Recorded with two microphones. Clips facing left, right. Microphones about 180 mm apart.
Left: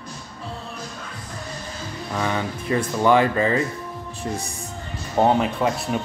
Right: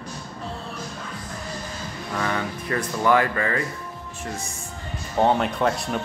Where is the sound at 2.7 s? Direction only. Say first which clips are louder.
Left 3 dB; 25° left (ahead or behind).